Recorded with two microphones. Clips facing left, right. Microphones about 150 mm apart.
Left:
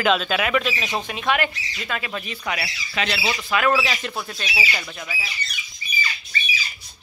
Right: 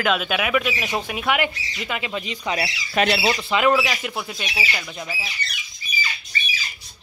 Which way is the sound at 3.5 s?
20° right (ahead or behind).